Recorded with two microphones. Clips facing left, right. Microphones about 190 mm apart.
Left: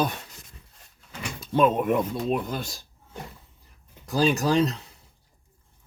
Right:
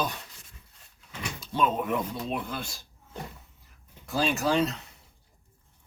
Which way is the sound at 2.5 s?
40° left (ahead or behind).